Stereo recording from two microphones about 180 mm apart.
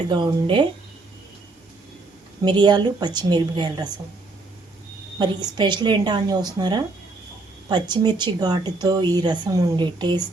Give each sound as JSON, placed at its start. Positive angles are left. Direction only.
{"t": 0.1, "sound": "a woman's voice", "side_deg": -25}
{"t": 2.4, "sound": "a woman's voice", "side_deg": -25}
{"t": 5.2, "sound": "a woman's voice", "side_deg": -25}